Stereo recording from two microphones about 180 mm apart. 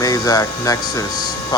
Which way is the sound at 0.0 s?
20° left (ahead or behind).